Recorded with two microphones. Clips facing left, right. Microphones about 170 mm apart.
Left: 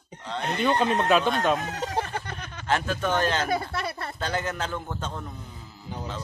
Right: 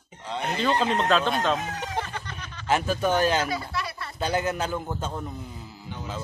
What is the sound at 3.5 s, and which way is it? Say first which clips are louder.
Speech: left 3 dB; 55° left (ahead or behind).